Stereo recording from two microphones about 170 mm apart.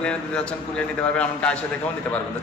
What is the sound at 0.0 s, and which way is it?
A man's voice, 5° left (ahead or behind).